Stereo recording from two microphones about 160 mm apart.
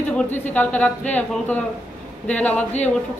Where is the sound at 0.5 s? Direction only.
10° left (ahead or behind).